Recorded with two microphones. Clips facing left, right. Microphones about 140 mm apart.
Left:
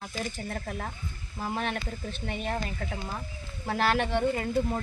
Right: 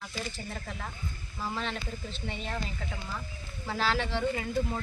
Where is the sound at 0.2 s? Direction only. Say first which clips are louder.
Left 4 dB; 50° left (ahead or behind).